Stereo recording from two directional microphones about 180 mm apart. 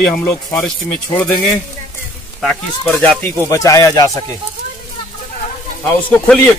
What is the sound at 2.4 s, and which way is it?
Speech, 5° left (ahead or behind).